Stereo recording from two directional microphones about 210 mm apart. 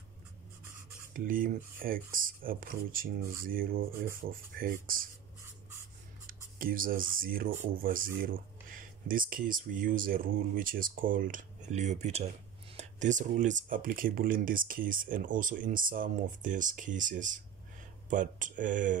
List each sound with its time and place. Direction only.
1.1 s speech: 40° right (ahead or behind)
6.2 s speech: 40° right (ahead or behind)